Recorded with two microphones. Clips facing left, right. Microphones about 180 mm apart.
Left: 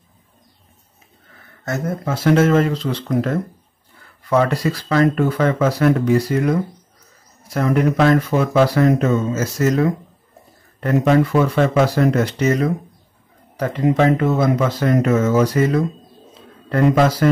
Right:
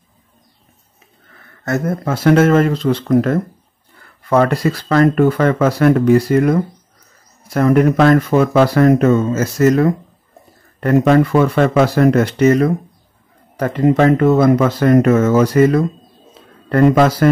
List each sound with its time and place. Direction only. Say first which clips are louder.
1.6 s speech: right 5 dB; 60° right (ahead or behind)